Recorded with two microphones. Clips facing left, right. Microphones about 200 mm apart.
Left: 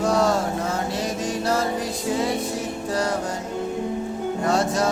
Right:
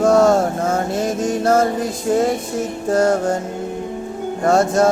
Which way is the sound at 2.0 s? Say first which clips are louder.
Right 7 dB; 50° right (ahead or behind).